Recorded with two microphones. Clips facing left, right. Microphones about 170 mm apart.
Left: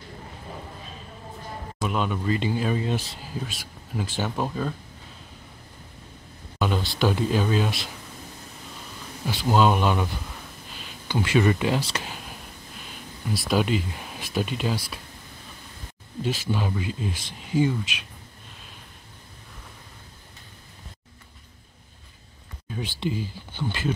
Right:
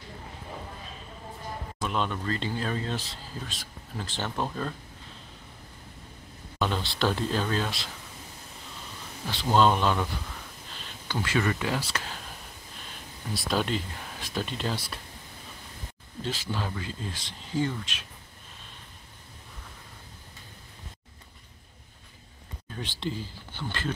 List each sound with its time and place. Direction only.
1.8 s speech: 5° left (ahead or behind)
6.6 s speech: 10° left (ahead or behind)
9.3 s speech: 5° left (ahead or behind)
13.3 s speech: 5° left (ahead or behind)
16.2 s speech: 15° left (ahead or behind)
22.7 s speech: 10° left (ahead or behind)